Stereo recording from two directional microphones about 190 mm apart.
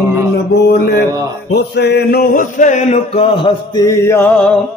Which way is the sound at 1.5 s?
60° left (ahead or behind).